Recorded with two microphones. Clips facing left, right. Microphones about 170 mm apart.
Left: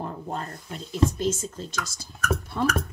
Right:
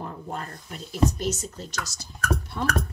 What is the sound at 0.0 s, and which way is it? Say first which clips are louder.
Speech: left 2 dB; 30° left (ahead or behind).